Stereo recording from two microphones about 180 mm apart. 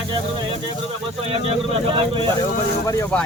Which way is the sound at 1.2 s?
35° right (ahead or behind).